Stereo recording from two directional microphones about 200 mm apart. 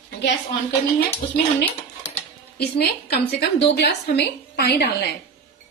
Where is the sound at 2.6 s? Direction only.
55° left (ahead or behind).